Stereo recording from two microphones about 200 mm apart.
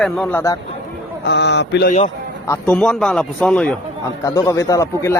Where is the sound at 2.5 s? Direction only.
5° left (ahead or behind).